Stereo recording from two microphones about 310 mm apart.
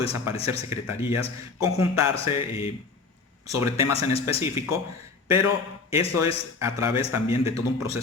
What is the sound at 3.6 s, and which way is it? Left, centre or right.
Speech, centre.